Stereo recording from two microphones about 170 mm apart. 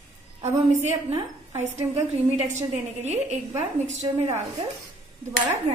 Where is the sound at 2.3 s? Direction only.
40° right (ahead or behind).